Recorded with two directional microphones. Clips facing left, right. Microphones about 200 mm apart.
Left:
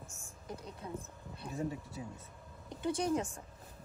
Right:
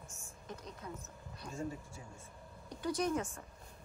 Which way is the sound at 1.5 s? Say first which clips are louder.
Left 3 dB; 20° left (ahead or behind).